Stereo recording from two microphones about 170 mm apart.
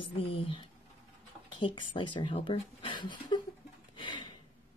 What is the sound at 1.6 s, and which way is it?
Speech, 30° left (ahead or behind).